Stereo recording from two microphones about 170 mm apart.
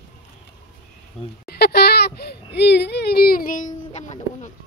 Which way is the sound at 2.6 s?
80° left.